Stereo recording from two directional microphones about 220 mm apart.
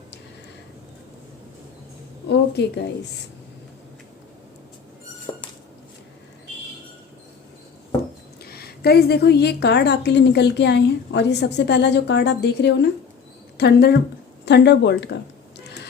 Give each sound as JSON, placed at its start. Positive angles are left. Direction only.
{"t": 2.2, "sound": "a woman's voice", "side_deg": 50}
{"t": 8.4, "sound": "a woman's voice", "side_deg": 45}
{"t": 14.4, "sound": "a sound", "side_deg": 50}